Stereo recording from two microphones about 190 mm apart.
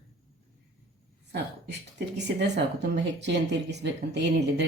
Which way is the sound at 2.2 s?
65° right (ahead or behind).